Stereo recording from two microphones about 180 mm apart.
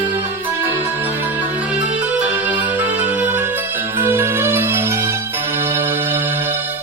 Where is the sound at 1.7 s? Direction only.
5° right (ahead or behind).